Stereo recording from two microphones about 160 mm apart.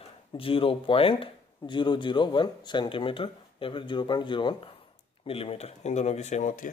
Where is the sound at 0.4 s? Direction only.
35° left (ahead or behind).